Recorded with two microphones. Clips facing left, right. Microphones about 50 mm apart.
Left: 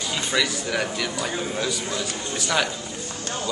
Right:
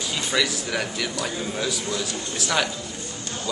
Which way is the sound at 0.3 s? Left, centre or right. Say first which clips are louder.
Even; centre.